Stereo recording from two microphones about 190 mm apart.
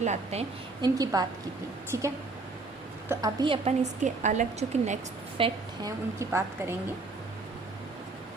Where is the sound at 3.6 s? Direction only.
40° right (ahead or behind); by 6.7 s 15° right (ahead or behind).